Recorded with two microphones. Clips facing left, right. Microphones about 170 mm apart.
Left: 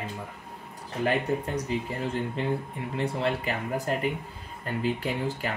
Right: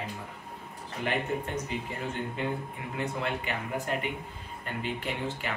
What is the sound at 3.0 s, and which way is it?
Speech, 30° left (ahead or behind).